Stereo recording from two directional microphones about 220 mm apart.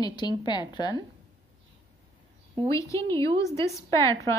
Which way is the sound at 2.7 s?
15° left (ahead or behind).